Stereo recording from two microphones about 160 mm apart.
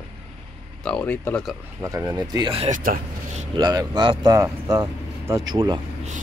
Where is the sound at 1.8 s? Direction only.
25° right (ahead or behind).